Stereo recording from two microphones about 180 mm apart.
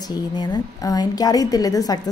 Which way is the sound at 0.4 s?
20° left (ahead or behind).